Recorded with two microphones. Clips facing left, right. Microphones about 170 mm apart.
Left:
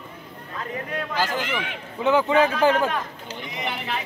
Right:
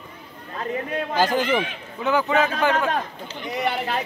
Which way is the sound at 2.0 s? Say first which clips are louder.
Left 2 dB; 25° left (ahead or behind).